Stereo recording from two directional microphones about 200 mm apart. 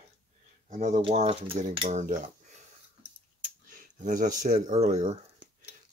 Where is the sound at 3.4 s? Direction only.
40° right (ahead or behind).